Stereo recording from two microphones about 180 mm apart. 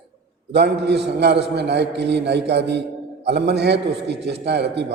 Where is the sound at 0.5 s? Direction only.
70° right (ahead or behind).